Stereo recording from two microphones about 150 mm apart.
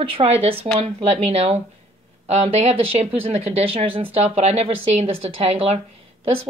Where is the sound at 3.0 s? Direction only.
40° right (ahead or behind).